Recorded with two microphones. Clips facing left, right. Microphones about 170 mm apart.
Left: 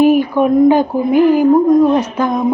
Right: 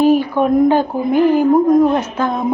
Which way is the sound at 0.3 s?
10° left (ahead or behind).